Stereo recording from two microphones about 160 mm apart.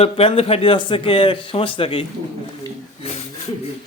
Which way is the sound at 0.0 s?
35° left (ahead or behind).